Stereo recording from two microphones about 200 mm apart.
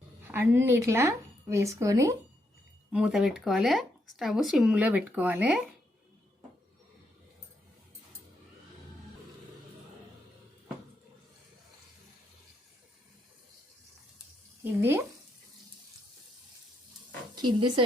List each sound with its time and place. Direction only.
0.3 s a woman's voice: 10° right (ahead or behind)
2.9 s speech: centre (ahead or behind)
14.6 s speech: 10° right (ahead or behind)
17.3 s speech: 20° right (ahead or behind)